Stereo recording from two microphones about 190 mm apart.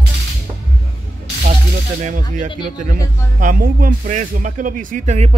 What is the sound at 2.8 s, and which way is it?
Speech, 45° right (ahead or behind).